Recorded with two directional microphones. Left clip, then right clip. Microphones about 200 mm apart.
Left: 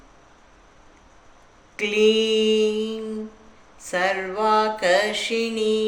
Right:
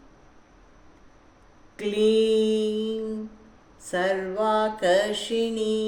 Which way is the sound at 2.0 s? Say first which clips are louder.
Left 1 dB; 20° left (ahead or behind).